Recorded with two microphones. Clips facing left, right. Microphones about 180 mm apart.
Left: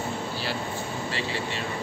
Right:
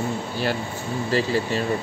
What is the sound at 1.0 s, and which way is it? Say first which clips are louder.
Speech: right 12 dB; 40° right (ahead or behind).